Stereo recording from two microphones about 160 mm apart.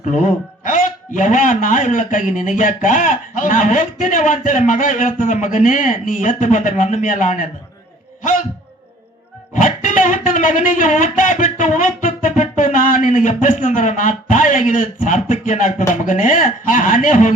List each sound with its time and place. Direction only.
0.1 s a man's voice: 50° left (ahead or behind)
9.6 s speech: 50° left (ahead or behind)
11.2 s music: 50° left (ahead or behind)
15.0 s a man's voice: 50° left (ahead or behind)